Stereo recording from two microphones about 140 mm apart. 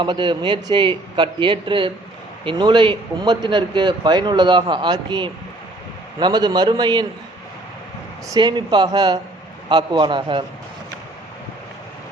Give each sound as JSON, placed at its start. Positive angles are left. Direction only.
{"t": 0.0, "sound": "a man's voice", "side_deg": -35}
{"t": 8.3, "sound": "a man's voice", "side_deg": -30}